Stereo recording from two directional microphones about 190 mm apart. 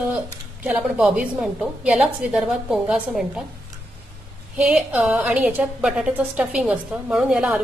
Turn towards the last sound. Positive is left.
turn(degrees=0)  # may be behind; listen again after turning